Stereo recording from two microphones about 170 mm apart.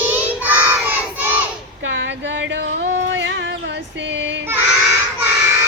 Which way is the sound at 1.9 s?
90° right.